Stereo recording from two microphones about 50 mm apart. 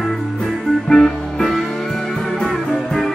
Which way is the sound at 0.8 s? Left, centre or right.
Centre.